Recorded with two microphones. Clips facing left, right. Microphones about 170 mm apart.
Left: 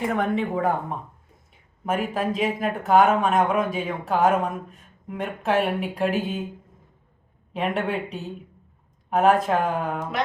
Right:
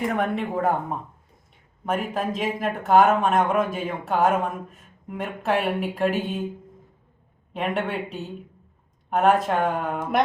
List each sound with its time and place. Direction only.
0.2 s speech: centre (ahead or behind)
7.5 s speech: centre (ahead or behind)